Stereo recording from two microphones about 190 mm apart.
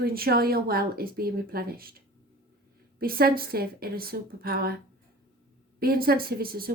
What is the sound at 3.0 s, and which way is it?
A woman's voice, 50° right (ahead or behind).